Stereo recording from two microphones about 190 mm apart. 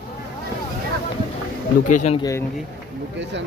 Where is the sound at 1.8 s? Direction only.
40° left (ahead or behind).